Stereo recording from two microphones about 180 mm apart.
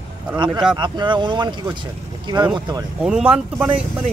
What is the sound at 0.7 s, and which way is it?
Speech, 25° right (ahead or behind).